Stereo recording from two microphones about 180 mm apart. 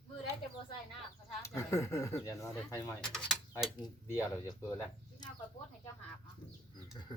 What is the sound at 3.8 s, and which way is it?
Speech, 15° left (ahead or behind).